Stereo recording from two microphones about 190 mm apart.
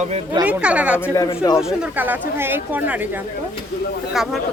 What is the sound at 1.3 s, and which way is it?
Speech, 30° left (ahead or behind).